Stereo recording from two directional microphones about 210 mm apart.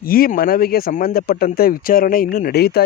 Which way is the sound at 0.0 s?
45° left (ahead or behind).